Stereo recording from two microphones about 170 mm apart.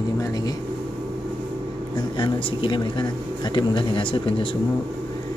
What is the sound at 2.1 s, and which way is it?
Speech, 25° left (ahead or behind).